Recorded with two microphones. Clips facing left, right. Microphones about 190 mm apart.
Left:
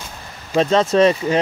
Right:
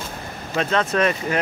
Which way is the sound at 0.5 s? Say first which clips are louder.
Left 6 dB; 30° left (ahead or behind).